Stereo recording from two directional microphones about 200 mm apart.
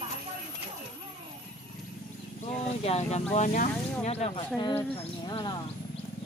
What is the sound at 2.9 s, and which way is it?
Speech, 30° left (ahead or behind).